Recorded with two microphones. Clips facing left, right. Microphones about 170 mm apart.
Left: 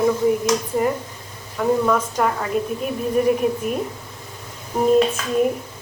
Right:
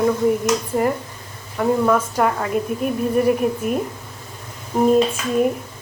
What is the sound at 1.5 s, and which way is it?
A woman's voice, 5° right (ahead or behind).